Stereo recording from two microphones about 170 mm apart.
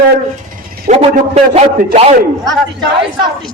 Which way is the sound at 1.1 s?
45° right (ahead or behind).